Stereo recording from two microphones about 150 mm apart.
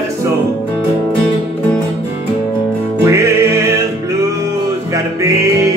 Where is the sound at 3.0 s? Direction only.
20° right (ahead or behind).